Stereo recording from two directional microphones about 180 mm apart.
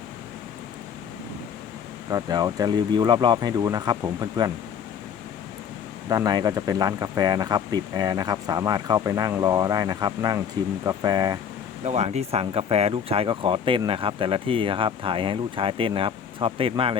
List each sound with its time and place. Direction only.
2.0 s speech: 20° right (ahead or behind)
6.1 s speech: 20° right (ahead or behind)
11.9 s speech: 35° right (ahead or behind)